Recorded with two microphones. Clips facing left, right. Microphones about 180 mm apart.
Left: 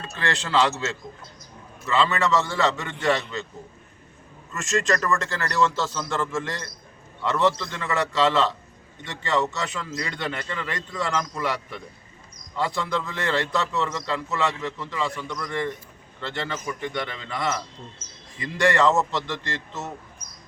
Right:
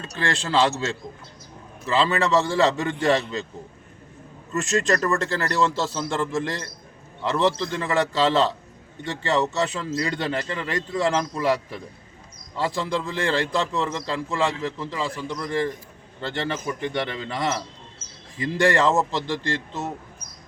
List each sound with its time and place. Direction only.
0.2 s a man's voice: 30° right (ahead or behind)
1.8 s a man's voice: 30° right (ahead or behind)
4.5 s a man's voice: 35° right (ahead or behind)